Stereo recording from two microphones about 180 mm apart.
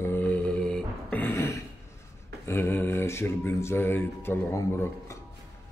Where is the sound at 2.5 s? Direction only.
10° left (ahead or behind).